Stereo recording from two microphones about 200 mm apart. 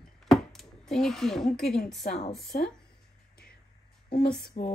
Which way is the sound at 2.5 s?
45° left (ahead or behind).